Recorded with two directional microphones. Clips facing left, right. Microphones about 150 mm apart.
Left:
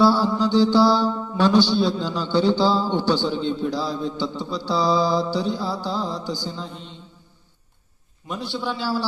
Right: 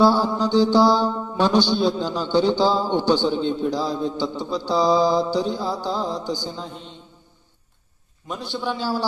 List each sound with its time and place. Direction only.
0.0 s mantra: 15° right (ahead or behind)
8.4 s mantra: 15° right (ahead or behind)